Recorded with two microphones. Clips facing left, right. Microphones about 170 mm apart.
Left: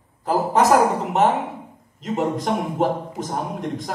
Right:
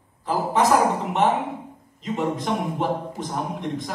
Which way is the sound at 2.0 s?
45° left (ahead or behind).